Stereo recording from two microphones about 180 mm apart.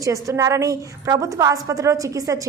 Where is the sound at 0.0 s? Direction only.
15° right (ahead or behind).